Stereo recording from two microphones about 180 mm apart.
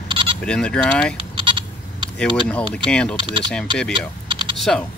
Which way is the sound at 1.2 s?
30° right (ahead or behind).